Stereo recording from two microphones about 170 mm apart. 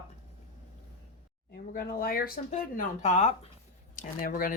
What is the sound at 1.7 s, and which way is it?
Speech, 60° left (ahead or behind).